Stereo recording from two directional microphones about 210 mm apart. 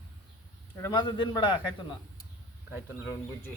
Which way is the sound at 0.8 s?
20° left (ahead or behind).